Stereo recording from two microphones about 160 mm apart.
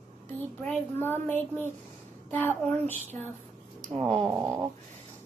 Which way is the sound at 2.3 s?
10° left (ahead or behind).